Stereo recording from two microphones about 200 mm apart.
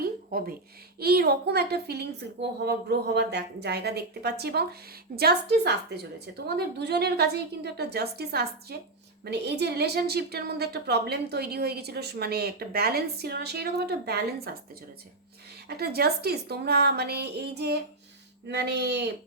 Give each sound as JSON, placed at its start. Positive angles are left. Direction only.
{"t": 0.0, "sound": "a sound", "side_deg": -45}
{"t": 0.9, "sound": "a woman's voice", "side_deg": -50}
{"t": 15.8, "sound": "a woman's voice", "side_deg": -50}